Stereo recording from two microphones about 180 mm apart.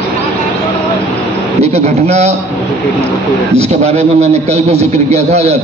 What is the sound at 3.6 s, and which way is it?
A man's voice, 35° right (ahead or behind).